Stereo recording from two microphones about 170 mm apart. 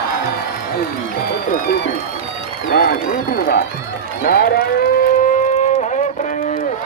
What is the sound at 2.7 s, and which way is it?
Run, 60° left (ahead or behind).